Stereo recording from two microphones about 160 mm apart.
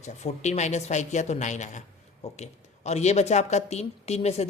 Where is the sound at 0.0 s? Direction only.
45° left (ahead or behind).